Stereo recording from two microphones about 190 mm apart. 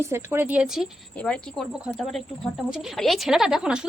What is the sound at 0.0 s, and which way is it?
A woman's voice, 15° right (ahead or behind).